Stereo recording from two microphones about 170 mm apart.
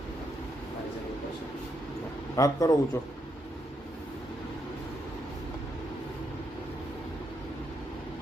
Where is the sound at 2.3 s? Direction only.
20° left (ahead or behind).